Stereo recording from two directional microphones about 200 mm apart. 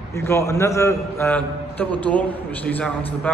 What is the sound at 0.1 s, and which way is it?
A man's voice, 15° left (ahead or behind).